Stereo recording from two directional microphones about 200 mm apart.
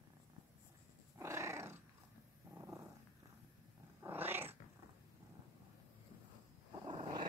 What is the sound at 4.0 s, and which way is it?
Cat, 10° right (ahead or behind).